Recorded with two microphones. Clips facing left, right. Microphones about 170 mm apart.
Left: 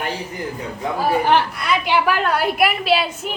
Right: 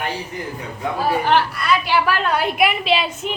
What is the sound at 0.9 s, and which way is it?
A woman's voice, 15° left (ahead or behind).